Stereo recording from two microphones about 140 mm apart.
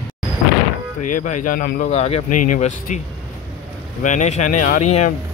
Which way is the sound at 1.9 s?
50° left (ahead or behind).